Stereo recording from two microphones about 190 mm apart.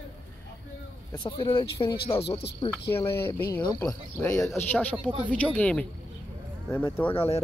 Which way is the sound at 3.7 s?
10° left (ahead or behind).